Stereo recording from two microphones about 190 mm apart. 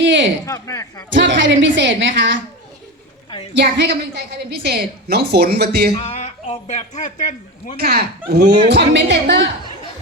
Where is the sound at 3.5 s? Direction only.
65° right (ahead or behind).